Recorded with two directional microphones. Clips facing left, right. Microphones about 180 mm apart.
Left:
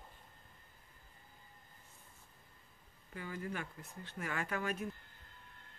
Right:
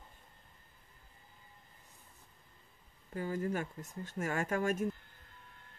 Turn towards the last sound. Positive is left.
turn(degrees=-45)  # may be behind; listen again after turning